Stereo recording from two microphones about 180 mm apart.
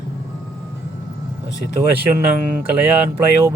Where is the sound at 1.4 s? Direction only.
75° left (ahead or behind).